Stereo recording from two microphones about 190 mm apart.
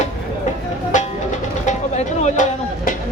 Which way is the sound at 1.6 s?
40° left (ahead or behind).